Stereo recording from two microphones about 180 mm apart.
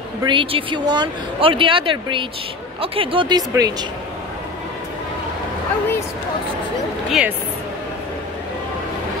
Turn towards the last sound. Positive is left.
turn(degrees=-5)  # may be behind; listen again after turning